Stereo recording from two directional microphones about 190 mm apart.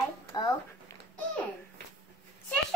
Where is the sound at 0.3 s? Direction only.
20° left (ahead or behind).